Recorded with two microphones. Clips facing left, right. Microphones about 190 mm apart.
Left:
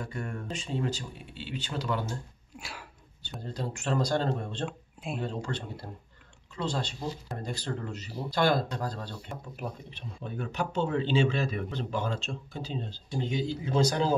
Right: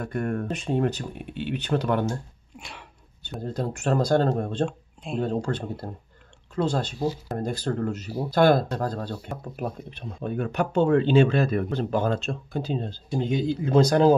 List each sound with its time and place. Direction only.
0.0 s speech: 60° right (ahead or behind)
2.5 s a sound: centre (ahead or behind)
3.2 s speech: 55° right (ahead or behind)
4.6 s speech: 5° left (ahead or behind)
5.2 s speech: 50° right (ahead or behind)